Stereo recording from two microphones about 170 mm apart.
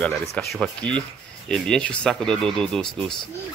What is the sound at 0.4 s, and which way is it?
Speech, centre (ahead or behind).